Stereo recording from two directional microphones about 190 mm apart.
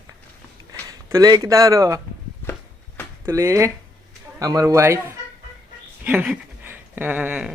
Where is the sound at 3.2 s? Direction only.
15° right (ahead or behind).